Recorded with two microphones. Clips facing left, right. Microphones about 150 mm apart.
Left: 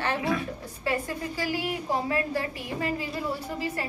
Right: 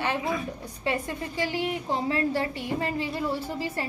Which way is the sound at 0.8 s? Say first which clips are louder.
Even; 25° right (ahead or behind).